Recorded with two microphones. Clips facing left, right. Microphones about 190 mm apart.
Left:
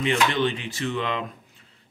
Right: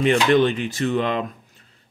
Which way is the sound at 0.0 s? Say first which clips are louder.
Right 6 dB; 45° right (ahead or behind).